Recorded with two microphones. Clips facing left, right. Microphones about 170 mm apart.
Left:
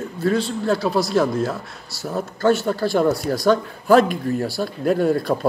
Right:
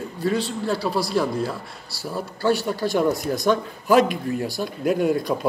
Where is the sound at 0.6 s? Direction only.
45° left (ahead or behind).